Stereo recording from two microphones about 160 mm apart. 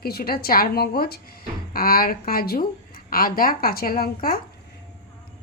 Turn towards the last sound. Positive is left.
turn(degrees=70)  # may be behind; listen again after turning